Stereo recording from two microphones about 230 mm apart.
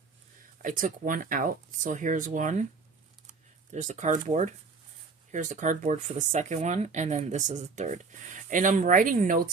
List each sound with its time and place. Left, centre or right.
0.6 s speech: right